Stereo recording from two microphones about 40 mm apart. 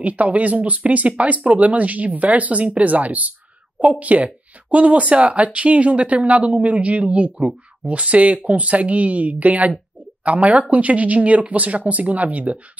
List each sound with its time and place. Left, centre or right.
0.0 s speech: right